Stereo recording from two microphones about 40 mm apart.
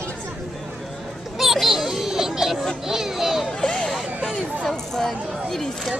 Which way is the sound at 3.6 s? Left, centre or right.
Left.